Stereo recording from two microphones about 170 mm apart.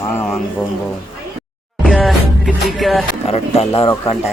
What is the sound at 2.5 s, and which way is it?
Music, centre (ahead or behind).